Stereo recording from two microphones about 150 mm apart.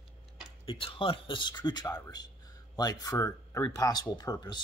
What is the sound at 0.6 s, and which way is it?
Speech, 35° left (ahead or behind).